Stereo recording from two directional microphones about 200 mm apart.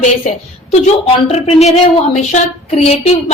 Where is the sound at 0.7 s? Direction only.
30° left (ahead or behind).